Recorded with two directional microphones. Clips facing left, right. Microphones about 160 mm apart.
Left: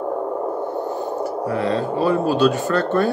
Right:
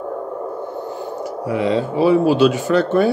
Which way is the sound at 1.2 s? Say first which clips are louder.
Right 3 dB; 15° right (ahead or behind).